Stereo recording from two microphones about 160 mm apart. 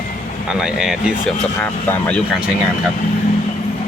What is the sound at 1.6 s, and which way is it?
Speech, 10° left (ahead or behind).